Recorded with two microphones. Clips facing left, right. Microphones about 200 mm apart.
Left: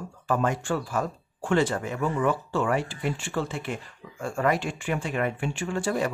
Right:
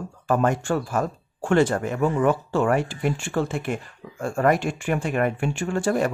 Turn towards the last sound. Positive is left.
turn(degrees=-50)  # may be behind; listen again after turning